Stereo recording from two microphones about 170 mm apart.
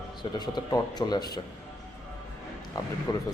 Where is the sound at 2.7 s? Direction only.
20° left (ahead or behind).